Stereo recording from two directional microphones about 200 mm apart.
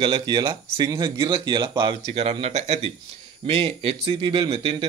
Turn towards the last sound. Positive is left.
turn(degrees=-25)  # may be behind; listen again after turning